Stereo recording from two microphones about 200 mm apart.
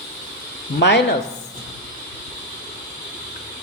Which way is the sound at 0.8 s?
60° left (ahead or behind).